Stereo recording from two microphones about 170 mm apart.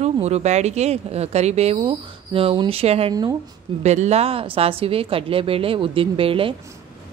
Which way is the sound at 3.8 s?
40° right (ahead or behind).